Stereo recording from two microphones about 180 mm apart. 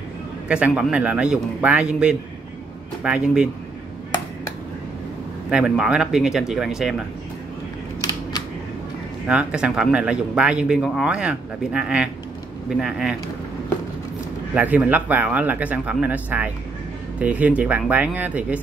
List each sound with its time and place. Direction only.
0.5 s speech: 5° right (ahead or behind)
5.5 s speech: 5° right (ahead or behind)
8.0 s camera: 20° left (ahead or behind)
9.3 s speech: 5° right (ahead or behind)
14.5 s speech: 10° right (ahead or behind)